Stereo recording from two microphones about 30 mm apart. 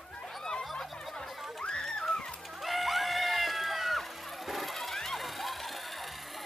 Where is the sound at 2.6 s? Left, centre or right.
Centre.